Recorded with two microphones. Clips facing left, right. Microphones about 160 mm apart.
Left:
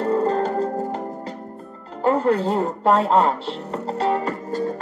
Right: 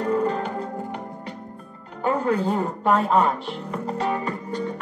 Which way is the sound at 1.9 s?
30° left (ahead or behind).